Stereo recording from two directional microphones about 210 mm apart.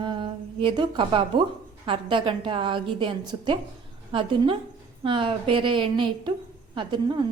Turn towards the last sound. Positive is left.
turn(degrees=-20)  # may be behind; listen again after turning